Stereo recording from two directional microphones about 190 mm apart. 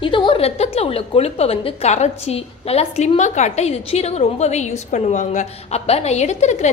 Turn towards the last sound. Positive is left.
turn(degrees=35)  # may be behind; listen again after turning